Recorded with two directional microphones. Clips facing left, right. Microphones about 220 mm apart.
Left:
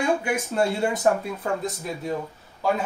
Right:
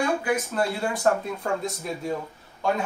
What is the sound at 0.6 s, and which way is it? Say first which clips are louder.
Speech: left 3 dB; 25° left (ahead or behind).